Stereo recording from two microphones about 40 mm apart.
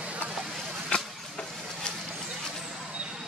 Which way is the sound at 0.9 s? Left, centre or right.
Left.